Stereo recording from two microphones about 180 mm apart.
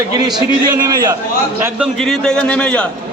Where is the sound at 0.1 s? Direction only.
20° right (ahead or behind).